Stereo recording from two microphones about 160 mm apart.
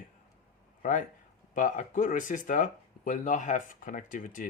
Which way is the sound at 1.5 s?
55° left (ahead or behind).